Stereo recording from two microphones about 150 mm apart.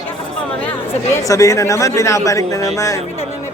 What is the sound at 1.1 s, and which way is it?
Speech, 20° left (ahead or behind).